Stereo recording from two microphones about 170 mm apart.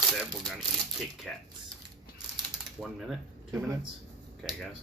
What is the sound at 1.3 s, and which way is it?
Speech, centre (ahead or behind).